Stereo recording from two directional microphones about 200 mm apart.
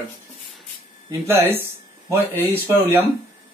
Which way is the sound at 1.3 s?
10° right (ahead or behind).